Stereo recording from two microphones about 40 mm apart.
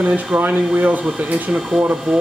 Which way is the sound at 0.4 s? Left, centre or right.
Right.